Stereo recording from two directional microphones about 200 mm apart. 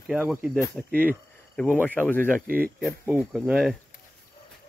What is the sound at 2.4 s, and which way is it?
Speech, 45° right (ahead or behind).